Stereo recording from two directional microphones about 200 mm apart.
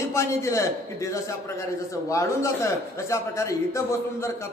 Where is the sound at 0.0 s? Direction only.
15° left (ahead or behind).